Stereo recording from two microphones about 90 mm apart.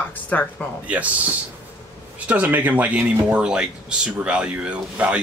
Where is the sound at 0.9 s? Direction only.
15° right (ahead or behind).